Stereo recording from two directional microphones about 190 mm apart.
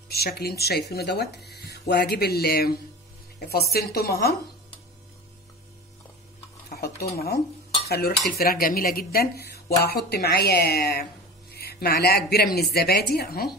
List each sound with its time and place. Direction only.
0.1 s speech: 55° left (ahead or behind)
6.7 s stir: 55° left (ahead or behind)
7.2 s speech: 55° left (ahead or behind)